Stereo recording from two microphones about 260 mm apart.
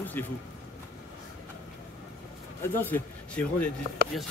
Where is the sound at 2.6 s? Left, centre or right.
Centre.